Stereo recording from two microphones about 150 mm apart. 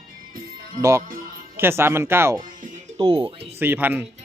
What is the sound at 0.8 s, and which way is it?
Speech, 20° right (ahead or behind).